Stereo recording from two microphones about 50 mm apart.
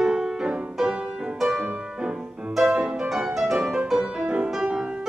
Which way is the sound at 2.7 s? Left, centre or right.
Centre.